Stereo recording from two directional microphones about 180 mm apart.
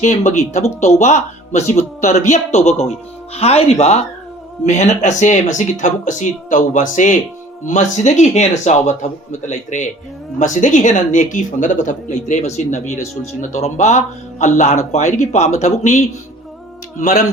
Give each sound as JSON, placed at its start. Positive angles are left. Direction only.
{"t": 0.0, "sound": "a man's voice", "side_deg": 40}
{"t": 17.0, "sound": "a man's voice", "side_deg": 40}